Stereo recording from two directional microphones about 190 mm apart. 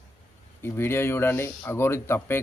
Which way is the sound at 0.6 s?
10° left (ahead or behind).